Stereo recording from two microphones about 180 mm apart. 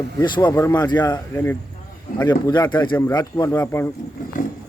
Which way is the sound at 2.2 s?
25° left (ahead or behind).